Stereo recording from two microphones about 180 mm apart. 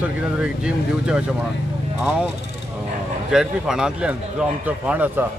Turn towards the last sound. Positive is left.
turn(degrees=-10)  # may be behind; listen again after turning